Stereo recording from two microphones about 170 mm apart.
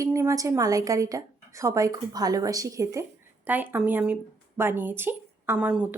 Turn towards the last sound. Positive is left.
turn(degrees=-5)  # may be behind; listen again after turning